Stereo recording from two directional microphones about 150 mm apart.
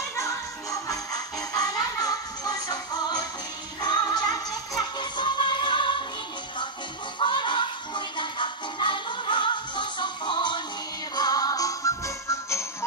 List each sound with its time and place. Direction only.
0.2 s music: 20° left (ahead or behind)
7.2 s music: 30° left (ahead or behind)